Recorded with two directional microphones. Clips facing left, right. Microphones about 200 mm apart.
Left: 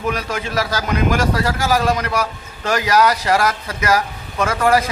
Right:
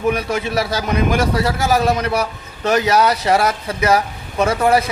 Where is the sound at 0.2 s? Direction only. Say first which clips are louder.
Right 4 dB; 15° right (ahead or behind).